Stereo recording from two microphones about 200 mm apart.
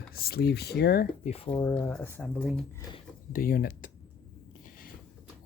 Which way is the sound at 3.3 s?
45° left (ahead or behind).